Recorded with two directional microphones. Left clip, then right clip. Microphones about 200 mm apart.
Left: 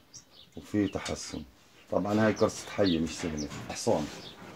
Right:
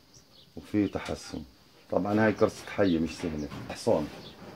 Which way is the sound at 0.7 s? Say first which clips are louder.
Right 1 dB; 20° left (ahead or behind).